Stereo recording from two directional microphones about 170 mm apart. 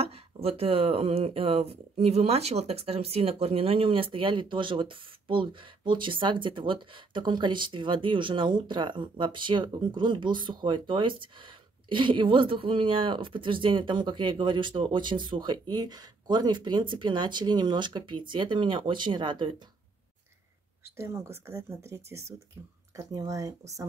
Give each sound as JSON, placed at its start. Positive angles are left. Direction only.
{"t": 0.0, "sound": "speech", "side_deg": -35}
{"t": 20.8, "sound": "speech", "side_deg": -15}